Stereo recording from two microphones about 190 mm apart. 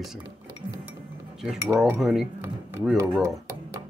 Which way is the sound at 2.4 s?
10° right (ahead or behind).